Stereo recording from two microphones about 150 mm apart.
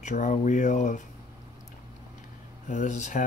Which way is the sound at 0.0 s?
55° left (ahead or behind).